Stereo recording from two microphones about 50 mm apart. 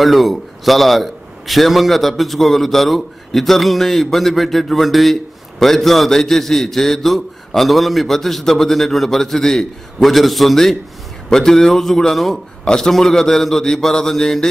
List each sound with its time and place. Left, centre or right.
0.0 s a man's voice: centre